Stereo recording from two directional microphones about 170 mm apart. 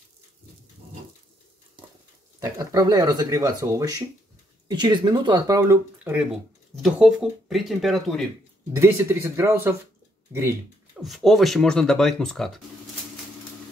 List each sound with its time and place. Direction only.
2.4 s speech: 20° right (ahead or behind); by 8.2 s centre (ahead or behind)
8.7 s speech: 15° right (ahead or behind)
11.0 s speech: centre (ahead or behind)